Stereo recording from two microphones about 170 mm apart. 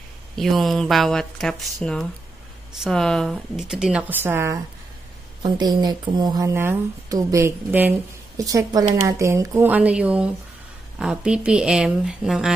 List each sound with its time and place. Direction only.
0.4 s speech: centre (ahead or behind)
5.4 s speech: 25° right (ahead or behind); by 12.5 s 5° right (ahead or behind)